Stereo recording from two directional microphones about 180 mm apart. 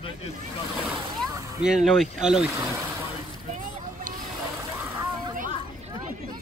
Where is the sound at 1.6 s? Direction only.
5° right (ahead or behind).